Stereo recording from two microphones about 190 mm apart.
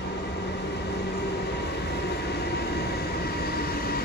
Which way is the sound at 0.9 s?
60° left (ahead or behind).